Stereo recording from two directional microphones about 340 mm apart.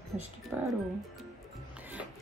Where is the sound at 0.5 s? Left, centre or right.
Centre.